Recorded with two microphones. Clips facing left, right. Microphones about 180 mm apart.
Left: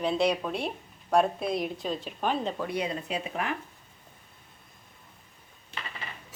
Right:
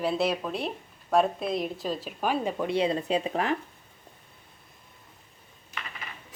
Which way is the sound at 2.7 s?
30° right (ahead or behind).